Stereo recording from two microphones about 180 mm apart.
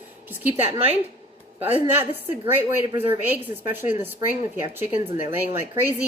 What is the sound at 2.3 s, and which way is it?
Speech, 10° right (ahead or behind).